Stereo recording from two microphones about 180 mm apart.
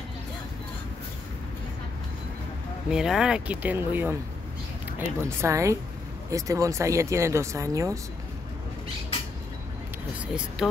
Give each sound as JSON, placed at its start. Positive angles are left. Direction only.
{"t": 2.9, "sound": "speech", "side_deg": -5}
{"t": 10.2, "sound": "speech", "side_deg": -5}